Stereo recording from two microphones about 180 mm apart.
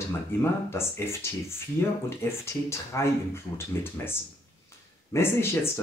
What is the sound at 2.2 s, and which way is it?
Speech, 15° left (ahead or behind).